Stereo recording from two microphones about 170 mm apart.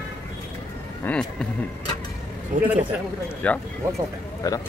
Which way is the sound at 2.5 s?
50° right (ahead or behind).